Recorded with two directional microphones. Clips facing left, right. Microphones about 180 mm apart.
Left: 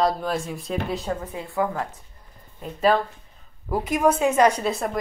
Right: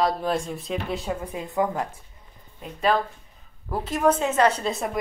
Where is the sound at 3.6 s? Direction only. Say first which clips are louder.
Left 1 dB; 10° left (ahead or behind).